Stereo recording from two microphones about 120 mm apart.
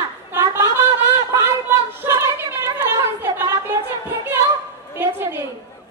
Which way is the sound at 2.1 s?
25° right (ahead or behind).